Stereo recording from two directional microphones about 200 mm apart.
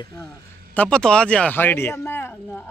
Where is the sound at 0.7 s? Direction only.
5° left (ahead or behind).